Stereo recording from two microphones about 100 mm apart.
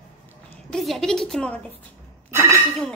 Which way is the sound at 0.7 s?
5° left (ahead or behind).